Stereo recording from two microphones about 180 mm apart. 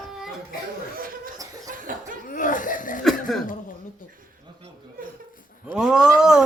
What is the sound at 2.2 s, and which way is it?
Laughter, 50° left (ahead or behind).